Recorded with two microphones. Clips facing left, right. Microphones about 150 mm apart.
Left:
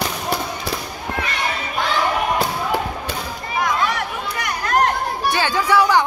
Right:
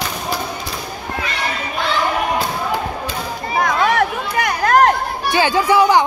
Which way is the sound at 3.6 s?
55° right (ahead or behind).